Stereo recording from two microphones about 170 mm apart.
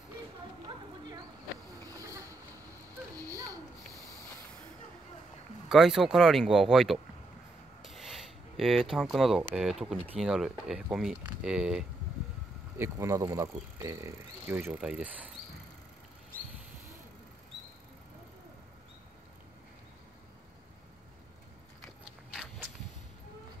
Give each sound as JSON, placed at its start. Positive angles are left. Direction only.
{"t": 1.9, "sound": "a sound", "side_deg": -20}
{"t": 5.7, "sound": "speech", "side_deg": 0}
{"t": 7.8, "sound": "a sound", "side_deg": 0}
{"t": 9.4, "sound": "speech", "side_deg": -10}
{"t": 12.7, "sound": "speech", "side_deg": -15}
{"t": 22.3, "sound": "walk", "side_deg": -5}